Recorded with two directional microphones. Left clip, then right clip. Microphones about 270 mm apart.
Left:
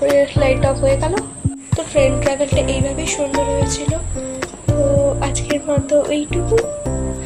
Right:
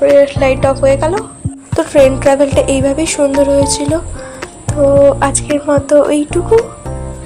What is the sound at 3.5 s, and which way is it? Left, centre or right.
Music, right.